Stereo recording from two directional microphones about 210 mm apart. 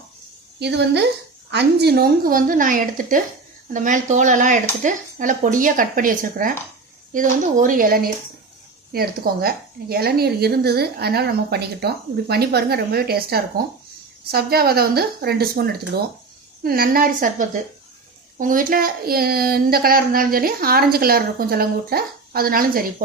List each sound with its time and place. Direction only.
0.6 s a child's voice: 55° right (ahead or behind)